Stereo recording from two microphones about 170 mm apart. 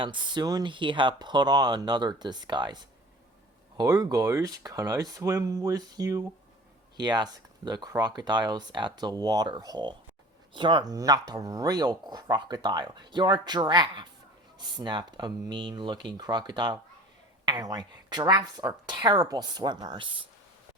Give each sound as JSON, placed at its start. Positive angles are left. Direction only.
{"t": 0.0, "sound": "speech", "side_deg": -25}
{"t": 3.8, "sound": "speech", "side_deg": -20}